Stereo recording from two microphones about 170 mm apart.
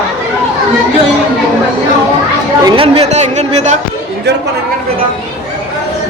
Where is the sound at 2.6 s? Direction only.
35° right (ahead or behind).